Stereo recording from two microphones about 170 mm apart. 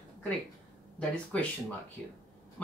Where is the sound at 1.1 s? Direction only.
5° left (ahead or behind).